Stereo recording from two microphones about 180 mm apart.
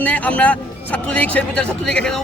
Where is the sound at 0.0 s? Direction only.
10° left (ahead or behind).